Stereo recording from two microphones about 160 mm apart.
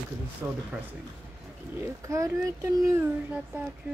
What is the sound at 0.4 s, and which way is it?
Speech, 15° right (ahead or behind).